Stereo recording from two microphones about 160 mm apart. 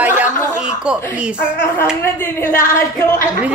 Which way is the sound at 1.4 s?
10° left (ahead or behind).